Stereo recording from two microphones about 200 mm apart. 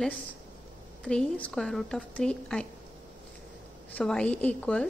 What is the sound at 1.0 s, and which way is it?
A woman's voice, 5° left (ahead or behind).